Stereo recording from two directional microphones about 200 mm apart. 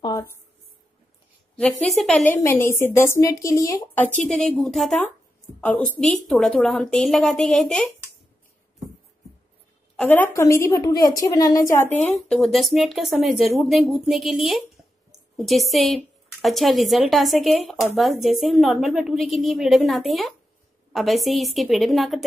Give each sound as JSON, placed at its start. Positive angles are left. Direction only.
{"t": 0.0, "sound": "a sound", "side_deg": 20}
{"t": 1.6, "sound": "a woman's voice", "side_deg": 5}
{"t": 9.9, "sound": "a woman's voice", "side_deg": 10}